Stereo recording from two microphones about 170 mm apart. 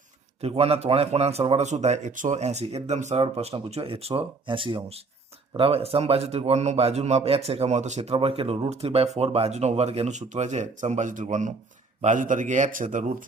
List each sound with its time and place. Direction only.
0.4 s a man's voice: 35° right (ahead or behind)